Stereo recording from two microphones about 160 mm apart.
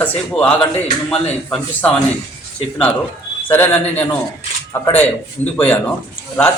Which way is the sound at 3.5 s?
10° left (ahead or behind).